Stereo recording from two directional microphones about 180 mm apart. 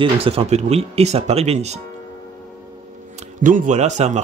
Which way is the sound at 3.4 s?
45° right (ahead or behind).